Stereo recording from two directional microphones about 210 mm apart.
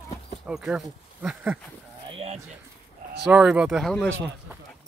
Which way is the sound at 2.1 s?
30° right (ahead or behind).